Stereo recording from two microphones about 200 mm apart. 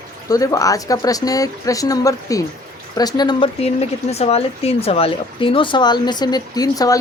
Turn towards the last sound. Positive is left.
turn(degrees=20)  # may be behind; listen again after turning